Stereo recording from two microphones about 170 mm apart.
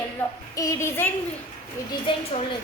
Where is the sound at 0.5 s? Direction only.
20° left (ahead or behind).